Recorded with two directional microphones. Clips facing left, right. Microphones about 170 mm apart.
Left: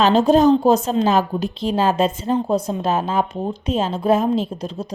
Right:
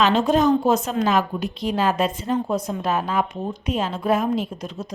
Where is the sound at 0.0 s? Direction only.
35° left (ahead or behind).